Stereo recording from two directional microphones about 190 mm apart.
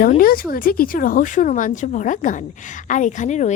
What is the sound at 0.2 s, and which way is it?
Speech, 50° left (ahead or behind).